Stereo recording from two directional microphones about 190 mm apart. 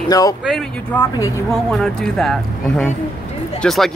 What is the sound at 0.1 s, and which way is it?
Speech, 20° left (ahead or behind).